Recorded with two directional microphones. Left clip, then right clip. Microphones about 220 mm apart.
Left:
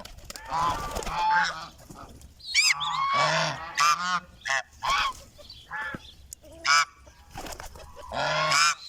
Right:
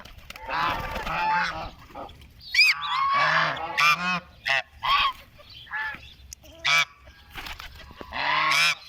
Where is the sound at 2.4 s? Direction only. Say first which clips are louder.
Right 3 dB; 30° left (ahead or behind).